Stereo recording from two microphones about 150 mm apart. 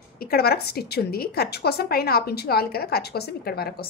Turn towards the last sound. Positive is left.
turn(degrees=90)